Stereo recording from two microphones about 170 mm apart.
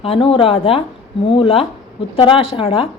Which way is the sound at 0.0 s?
35° left (ahead or behind).